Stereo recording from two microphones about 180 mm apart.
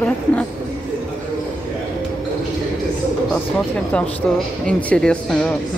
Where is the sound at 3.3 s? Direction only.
10° left (ahead or behind).